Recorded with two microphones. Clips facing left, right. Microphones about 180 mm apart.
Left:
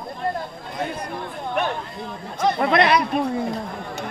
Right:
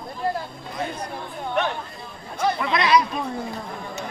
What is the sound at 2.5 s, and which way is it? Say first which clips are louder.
Speech: left 2 dB; 55° left (ahead or behind).